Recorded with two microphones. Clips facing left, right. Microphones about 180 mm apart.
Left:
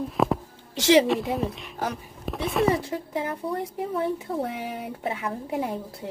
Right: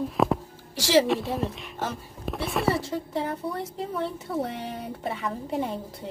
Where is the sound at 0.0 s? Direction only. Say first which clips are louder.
Even; centre (ahead or behind).